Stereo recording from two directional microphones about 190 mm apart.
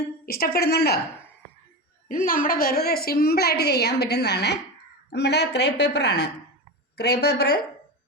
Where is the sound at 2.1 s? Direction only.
45° left (ahead or behind).